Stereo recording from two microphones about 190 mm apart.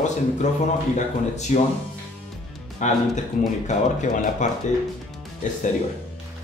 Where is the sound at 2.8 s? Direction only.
40° left (ahead or behind).